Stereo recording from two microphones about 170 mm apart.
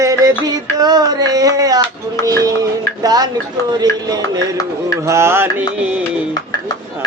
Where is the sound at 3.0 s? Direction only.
20° right (ahead or behind).